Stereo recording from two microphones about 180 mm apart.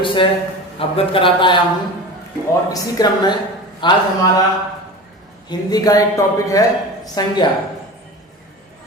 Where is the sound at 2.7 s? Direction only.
20° left (ahead or behind).